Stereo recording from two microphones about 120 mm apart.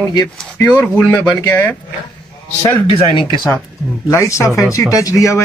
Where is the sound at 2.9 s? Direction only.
40° left (ahead or behind).